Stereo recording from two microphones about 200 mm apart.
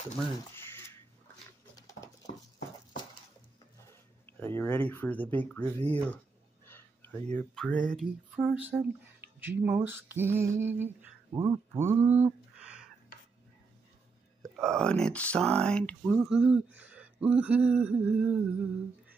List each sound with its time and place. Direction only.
0.6 s a sound: 10° left (ahead or behind)
1.8 s dog: 15° left (ahead or behind)
4.3 s speech: 10° left (ahead or behind)
6.6 s a sound: 10° left (ahead or behind)
7.3 s speech: 5° left (ahead or behind)
14.4 s speech: 5° left (ahead or behind)